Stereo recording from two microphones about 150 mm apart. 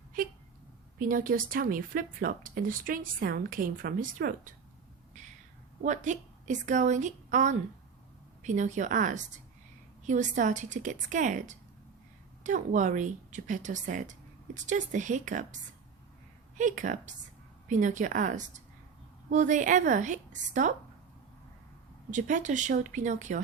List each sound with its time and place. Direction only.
0.9 s speech: 65° right (ahead or behind)
5.8 s a woman's voice: 55° right (ahead or behind)
22.1 s speech: 55° right (ahead or behind)